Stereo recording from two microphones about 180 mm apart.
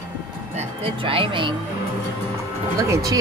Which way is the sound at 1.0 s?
30° right (ahead or behind).